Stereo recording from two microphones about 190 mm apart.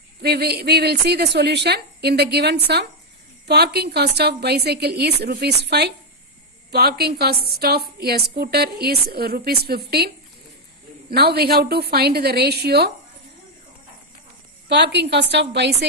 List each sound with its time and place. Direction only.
0.2 s a woman's voice: 55° right (ahead or behind)
14.7 s a woman's voice: 65° right (ahead or behind)